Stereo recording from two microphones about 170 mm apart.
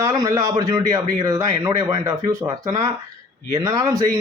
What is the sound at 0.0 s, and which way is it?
A man's voice, 20° right (ahead or behind).